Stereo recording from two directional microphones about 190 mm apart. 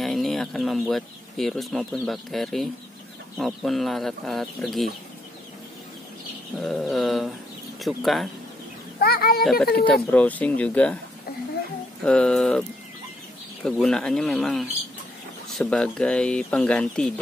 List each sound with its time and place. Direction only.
0.0 s speech: centre (ahead or behind)
6.6 s speech: centre (ahead or behind)
9.0 s speech: 55° left (ahead or behind)
9.4 s speech: centre (ahead or behind)
12.0 s speech: 5° left (ahead or behind)